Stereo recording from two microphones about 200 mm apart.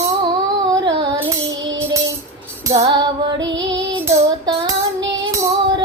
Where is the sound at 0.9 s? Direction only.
25° right (ahead or behind).